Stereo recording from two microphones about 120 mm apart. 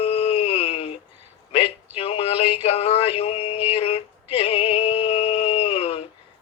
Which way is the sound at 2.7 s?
55° left (ahead or behind).